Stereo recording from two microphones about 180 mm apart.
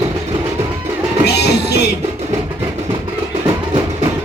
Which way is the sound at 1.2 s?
65° left (ahead or behind).